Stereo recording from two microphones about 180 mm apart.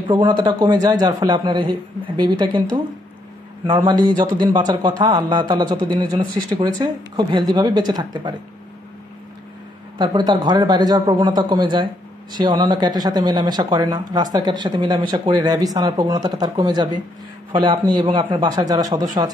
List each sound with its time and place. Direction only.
0.1 s a man's voice: 25° right (ahead or behind)
3.6 s a man's voice: 25° right (ahead or behind)
9.9 s a man's voice: 25° right (ahead or behind)